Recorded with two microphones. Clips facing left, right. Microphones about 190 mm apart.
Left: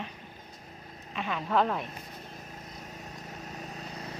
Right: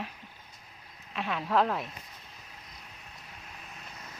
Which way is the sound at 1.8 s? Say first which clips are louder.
Left 5 dB; 45° left (ahead or behind).